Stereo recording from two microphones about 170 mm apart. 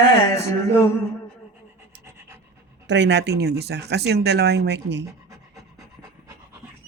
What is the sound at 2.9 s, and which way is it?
Speech, 90° right.